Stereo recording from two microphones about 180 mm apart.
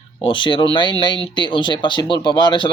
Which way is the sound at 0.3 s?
25° left (ahead or behind).